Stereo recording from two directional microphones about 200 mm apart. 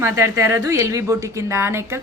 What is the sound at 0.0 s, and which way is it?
A woman's voice, 15° right (ahead or behind).